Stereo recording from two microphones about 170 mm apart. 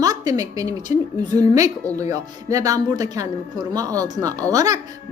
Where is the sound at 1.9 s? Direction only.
20° right (ahead or behind).